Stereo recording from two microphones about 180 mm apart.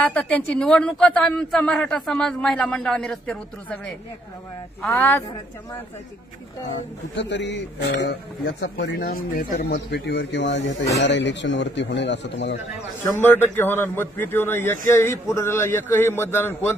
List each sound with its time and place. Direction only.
0.1 s speech: 5° left (ahead or behind)
7.2 s speech: 80° left
8.8 s speech: 60° left (ahead or behind); by 12.5 s 80° left
13.0 s a man's voice: 10° left (ahead or behind)